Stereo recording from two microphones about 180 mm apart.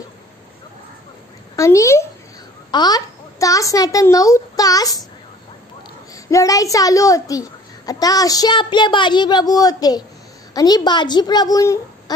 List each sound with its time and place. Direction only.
1.6 s a woman's voice: 15° left (ahead or behind)
6.2 s a child's voice: 20° left (ahead or behind)